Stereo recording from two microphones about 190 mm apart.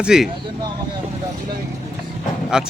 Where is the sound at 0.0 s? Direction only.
5° right (ahead or behind).